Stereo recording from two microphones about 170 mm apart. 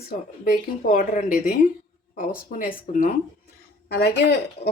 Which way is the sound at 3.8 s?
75° left (ahead or behind).